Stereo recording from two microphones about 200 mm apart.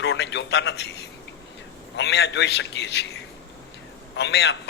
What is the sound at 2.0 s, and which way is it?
A man's voice, 60° left (ahead or behind).